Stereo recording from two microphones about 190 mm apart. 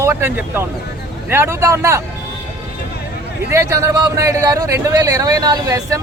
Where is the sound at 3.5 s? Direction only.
15° right (ahead or behind).